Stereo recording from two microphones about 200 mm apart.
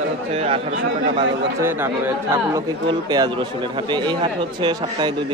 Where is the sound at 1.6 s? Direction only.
10° right (ahead or behind).